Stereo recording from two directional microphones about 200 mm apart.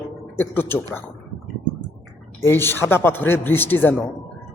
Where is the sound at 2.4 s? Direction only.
10° left (ahead or behind).